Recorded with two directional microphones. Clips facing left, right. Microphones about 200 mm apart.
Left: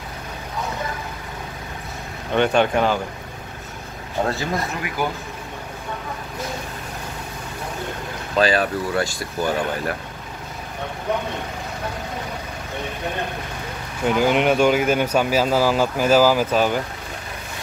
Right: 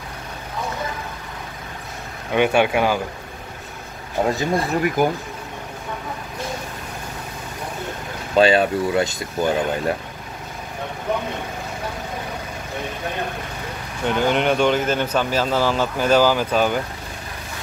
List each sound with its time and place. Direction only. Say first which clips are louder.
2.3 s speech: right 1 dB; 10° right (ahead or behind)
4.2 s speech: right 3 dB; 15° right (ahead or behind)
8.4 s speech: right 4 dB; 25° right (ahead or behind)
14.0 s speech: left 1 dB; 5° left (ahead or behind)